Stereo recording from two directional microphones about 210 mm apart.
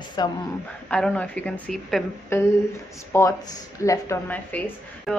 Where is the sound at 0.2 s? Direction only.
20° left (ahead or behind).